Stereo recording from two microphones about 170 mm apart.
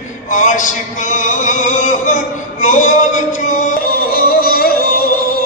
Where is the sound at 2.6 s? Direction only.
45° left (ahead or behind).